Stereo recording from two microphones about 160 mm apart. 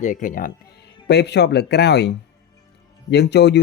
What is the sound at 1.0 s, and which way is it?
Speech, 90° left.